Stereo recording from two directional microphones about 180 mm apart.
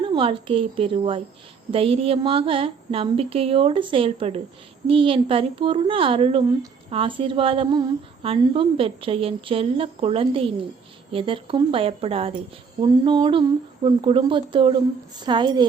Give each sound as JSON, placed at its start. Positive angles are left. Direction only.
{"t": 0.0, "sound": "a woman's voice", "side_deg": -30}